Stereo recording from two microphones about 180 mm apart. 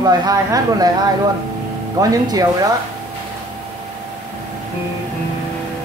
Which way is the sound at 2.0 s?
20° right (ahead or behind).